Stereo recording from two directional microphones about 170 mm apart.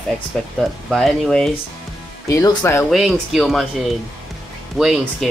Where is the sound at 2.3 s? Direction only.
20° left (ahead or behind).